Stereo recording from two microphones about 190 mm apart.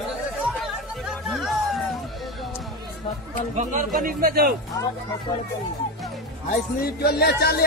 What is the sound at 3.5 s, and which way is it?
Speech, 45° right (ahead or behind).